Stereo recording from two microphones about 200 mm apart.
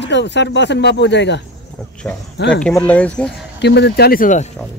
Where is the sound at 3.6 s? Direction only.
55° left (ahead or behind).